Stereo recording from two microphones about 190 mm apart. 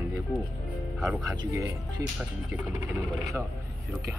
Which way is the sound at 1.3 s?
20° right (ahead or behind).